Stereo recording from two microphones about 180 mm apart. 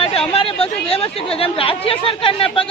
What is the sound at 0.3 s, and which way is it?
Speech, 30° left (ahead or behind).